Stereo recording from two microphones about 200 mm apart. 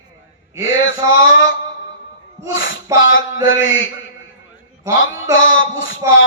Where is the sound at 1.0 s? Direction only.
85° left.